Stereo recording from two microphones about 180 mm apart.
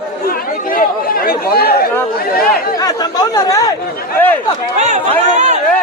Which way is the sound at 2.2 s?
55° left (ahead or behind).